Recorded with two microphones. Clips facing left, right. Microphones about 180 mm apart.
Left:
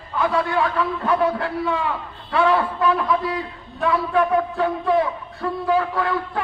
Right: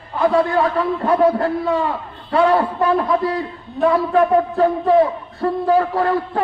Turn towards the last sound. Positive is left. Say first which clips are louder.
# right 5 dB
turn(degrees=-40)  # may be behind; listen again after turning